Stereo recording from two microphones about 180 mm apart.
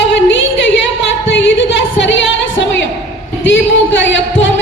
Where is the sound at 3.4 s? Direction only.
85° left.